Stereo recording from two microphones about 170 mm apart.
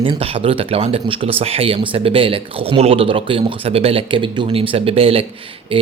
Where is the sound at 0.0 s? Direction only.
30° right (ahead or behind).